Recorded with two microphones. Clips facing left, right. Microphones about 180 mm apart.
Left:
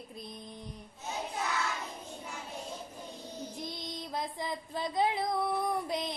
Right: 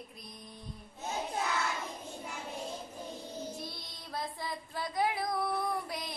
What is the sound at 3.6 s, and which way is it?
Child singing, 20° left (ahead or behind).